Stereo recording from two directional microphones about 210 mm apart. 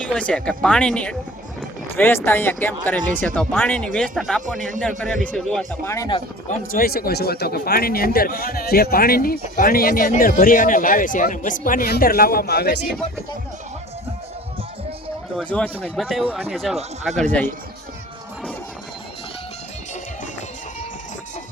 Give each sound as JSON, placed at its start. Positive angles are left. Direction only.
{"t": 0.0, "sound": "speech", "side_deg": 5}
{"t": 6.7, "sound": "a man's voice", "side_deg": 45}
{"t": 15.4, "sound": "speech", "side_deg": 5}